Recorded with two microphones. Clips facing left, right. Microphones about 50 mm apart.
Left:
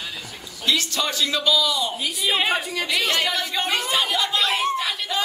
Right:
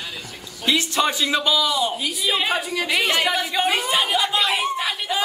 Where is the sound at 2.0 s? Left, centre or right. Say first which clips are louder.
Even; centre.